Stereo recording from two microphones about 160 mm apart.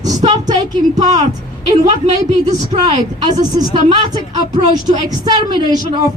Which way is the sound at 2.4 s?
45° right (ahead or behind).